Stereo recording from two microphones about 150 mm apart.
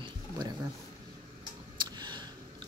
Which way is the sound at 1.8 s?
30° right (ahead or behind).